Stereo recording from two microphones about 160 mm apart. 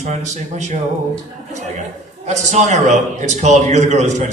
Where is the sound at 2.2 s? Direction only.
45° right (ahead or behind).